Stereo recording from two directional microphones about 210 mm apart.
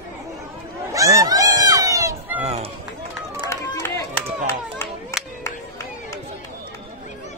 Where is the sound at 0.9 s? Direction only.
15° right (ahead or behind).